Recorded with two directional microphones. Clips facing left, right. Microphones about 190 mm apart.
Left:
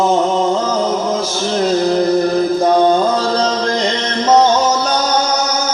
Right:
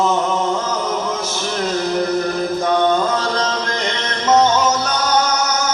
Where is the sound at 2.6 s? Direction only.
35° left (ahead or behind).